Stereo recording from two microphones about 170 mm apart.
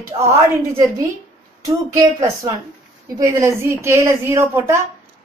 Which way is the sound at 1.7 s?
20° right (ahead or behind).